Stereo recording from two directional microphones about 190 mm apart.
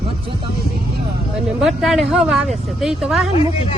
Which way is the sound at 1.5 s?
Centre (ahead or behind).